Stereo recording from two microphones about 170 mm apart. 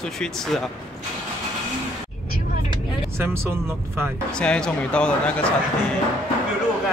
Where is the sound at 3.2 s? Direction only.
15° right (ahead or behind).